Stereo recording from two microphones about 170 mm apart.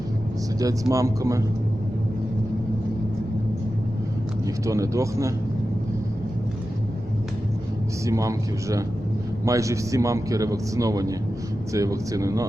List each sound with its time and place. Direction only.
0.6 s a man's voice: 20° right (ahead or behind)
4.4 s a man's voice: 20° right (ahead or behind)
8.0 s a man's voice: 20° right (ahead or behind)